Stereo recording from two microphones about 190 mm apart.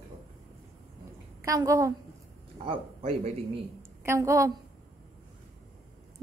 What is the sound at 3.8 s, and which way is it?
Speech, 15° right (ahead or behind).